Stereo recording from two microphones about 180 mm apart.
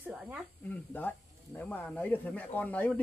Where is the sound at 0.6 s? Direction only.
10° left (ahead or behind).